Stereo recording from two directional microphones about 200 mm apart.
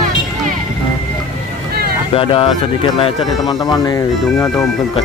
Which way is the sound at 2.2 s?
25° left (ahead or behind).